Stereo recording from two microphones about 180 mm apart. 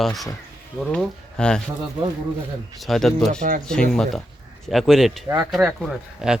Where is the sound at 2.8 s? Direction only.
Centre (ahead or behind).